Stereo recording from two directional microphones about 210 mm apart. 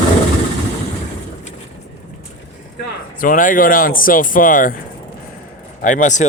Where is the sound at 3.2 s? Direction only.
40° left (ahead or behind).